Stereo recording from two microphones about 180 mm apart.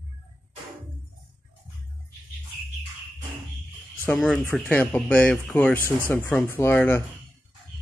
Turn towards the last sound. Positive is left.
turn(degrees=10)  # may be behind; listen again after turning